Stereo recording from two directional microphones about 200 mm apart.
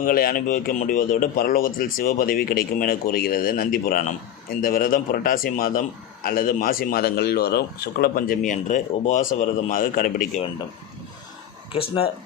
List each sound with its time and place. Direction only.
0.0 s speech: 45° left (ahead or behind)